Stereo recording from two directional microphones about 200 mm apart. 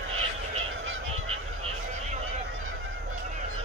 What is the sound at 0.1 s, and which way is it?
Fowl, 90° right.